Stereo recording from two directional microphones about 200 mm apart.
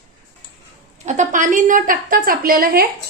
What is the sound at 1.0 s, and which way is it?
A woman's voice, 40° right (ahead or behind).